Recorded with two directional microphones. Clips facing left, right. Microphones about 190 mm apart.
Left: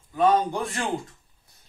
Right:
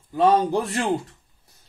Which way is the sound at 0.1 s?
35° right (ahead or behind).